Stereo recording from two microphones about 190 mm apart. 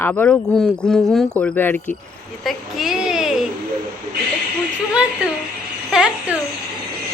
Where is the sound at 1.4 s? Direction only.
5° left (ahead or behind).